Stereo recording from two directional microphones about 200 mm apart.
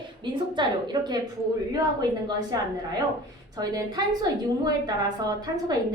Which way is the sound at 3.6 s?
20° right (ahead or behind).